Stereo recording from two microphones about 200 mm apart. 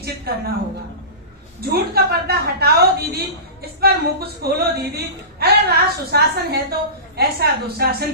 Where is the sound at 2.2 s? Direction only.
50° right (ahead or behind).